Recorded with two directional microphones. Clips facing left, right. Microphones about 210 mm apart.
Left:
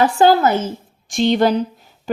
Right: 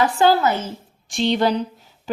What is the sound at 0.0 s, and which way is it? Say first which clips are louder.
A woman's voice: left 3 dB; 50° left (ahead or behind).